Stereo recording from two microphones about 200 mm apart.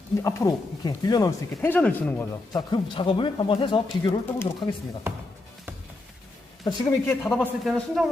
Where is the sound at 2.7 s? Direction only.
25° left (ahead or behind).